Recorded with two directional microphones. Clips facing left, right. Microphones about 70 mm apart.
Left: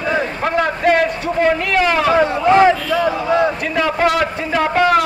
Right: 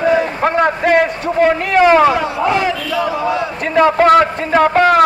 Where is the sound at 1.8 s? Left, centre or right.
Right.